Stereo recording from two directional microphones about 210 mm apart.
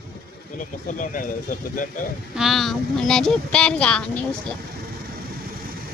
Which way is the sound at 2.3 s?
Centre (ahead or behind).